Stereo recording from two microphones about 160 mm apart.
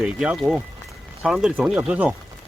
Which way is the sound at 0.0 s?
5° right (ahead or behind).